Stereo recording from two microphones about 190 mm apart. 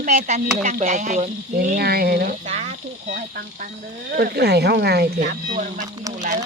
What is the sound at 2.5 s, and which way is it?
Speech, 35° right (ahead or behind).